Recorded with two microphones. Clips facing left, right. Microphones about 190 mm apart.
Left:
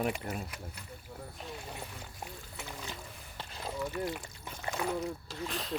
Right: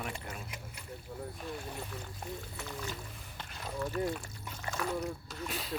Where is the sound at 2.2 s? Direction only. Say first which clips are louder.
Right 3 dB; 25° left (ahead or behind).